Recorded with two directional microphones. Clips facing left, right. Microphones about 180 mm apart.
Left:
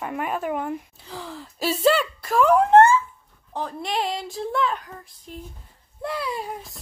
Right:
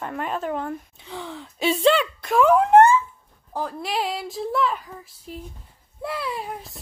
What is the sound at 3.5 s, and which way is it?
Child singing, 5° right (ahead or behind).